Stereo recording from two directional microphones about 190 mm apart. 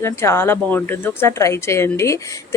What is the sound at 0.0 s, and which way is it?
Speech, 15° left (ahead or behind).